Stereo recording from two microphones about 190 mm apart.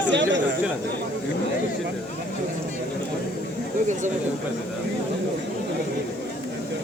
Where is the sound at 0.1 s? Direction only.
70° right (ahead or behind).